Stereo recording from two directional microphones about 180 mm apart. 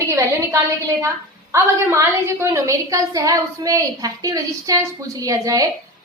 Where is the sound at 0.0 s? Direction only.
15° right (ahead or behind).